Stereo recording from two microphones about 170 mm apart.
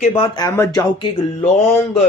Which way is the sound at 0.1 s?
25° left (ahead or behind).